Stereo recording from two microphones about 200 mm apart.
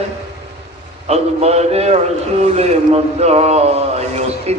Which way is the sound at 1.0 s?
30° right (ahead or behind).